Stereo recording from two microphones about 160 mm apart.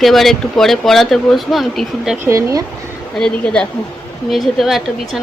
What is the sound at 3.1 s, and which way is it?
Speech, 5° left (ahead or behind).